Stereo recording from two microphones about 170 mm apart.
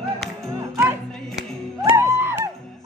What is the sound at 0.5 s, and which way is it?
Music, 20° right (ahead or behind).